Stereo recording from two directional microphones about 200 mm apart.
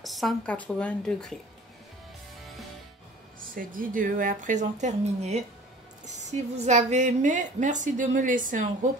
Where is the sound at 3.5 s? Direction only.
45° right (ahead or behind).